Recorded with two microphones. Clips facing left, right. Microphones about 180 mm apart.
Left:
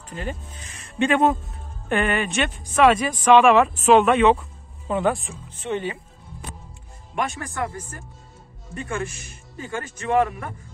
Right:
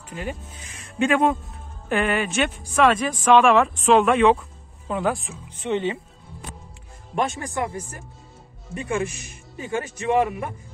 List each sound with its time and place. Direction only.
0.1 s speech: 10° right (ahead or behind)
5.6 s speech: 20° right (ahead or behind)
7.2 s speech: 20° right (ahead or behind)